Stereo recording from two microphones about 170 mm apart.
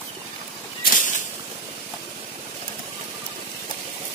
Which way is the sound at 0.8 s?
50° left (ahead or behind).